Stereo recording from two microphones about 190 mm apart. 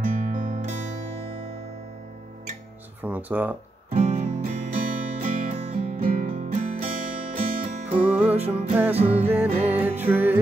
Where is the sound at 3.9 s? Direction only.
35° right (ahead or behind).